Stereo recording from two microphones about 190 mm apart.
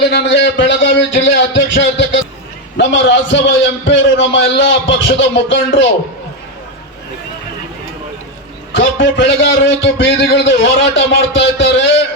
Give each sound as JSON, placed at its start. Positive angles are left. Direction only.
{"t": 0.1, "sound": "a man's voice", "side_deg": 65}
{"t": 8.7, "sound": "a man's voice", "side_deg": 75}